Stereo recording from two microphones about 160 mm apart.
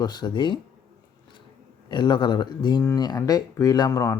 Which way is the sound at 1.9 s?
30° left (ahead or behind).